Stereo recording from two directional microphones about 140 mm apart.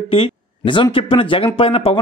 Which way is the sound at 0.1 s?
40° left (ahead or behind).